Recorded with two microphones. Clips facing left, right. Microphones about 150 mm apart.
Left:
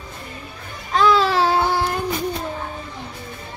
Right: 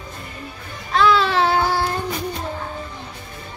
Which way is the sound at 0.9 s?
40° left (ahead or behind).